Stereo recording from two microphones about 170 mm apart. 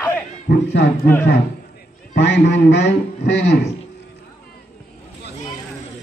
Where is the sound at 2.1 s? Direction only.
80° left.